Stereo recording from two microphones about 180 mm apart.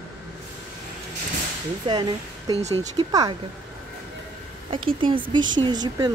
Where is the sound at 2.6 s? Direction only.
35° right (ahead or behind).